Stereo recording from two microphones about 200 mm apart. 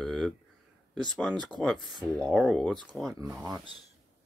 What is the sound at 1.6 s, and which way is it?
Speech, centre (ahead or behind).